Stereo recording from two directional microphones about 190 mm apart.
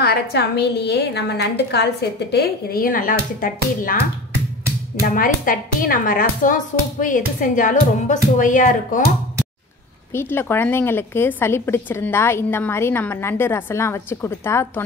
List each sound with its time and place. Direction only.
0.0 s a woman's voice: 60° left (ahead or behind)
5.0 s speech: 45° left (ahead or behind)
10.1 s a woman's voice: 10° left (ahead or behind)